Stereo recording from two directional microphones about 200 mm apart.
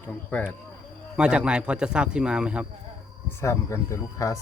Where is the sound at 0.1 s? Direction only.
10° left (ahead or behind).